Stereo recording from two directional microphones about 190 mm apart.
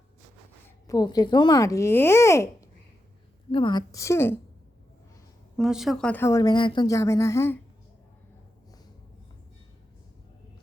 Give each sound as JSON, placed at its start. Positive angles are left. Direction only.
{"t": 0.9, "sound": "speech", "side_deg": 20}
{"t": 3.5, "sound": "speech", "side_deg": 25}
{"t": 5.5, "sound": "speech", "side_deg": 0}